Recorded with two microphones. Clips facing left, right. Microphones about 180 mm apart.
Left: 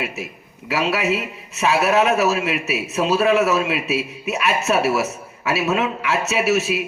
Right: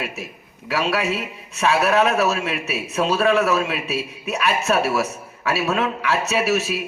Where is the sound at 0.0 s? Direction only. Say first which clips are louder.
Left 2 dB; centre (ahead or behind).